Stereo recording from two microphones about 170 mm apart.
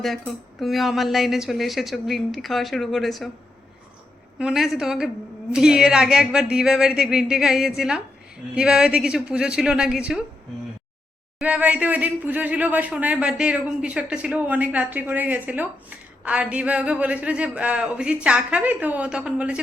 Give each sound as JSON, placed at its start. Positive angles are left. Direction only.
{"t": 0.6, "sound": "a woman's voice", "side_deg": 0}
{"t": 4.4, "sound": "a woman's voice", "side_deg": -5}
{"t": 11.3, "sound": "speech", "side_deg": -5}